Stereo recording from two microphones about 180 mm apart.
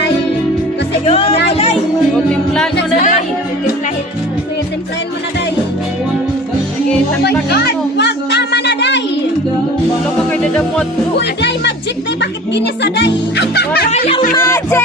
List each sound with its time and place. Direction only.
1.0 s music: 35° left (ahead or behind)
2.3 s music: 5° left (ahead or behind)
3.0 s music: 45° left (ahead or behind)
7.5 s music: 60° left (ahead or behind)
10.3 s music: 5° left (ahead or behind)
11.2 s speech: 70° left (ahead or behind)
14.3 s music: 15° left (ahead or behind)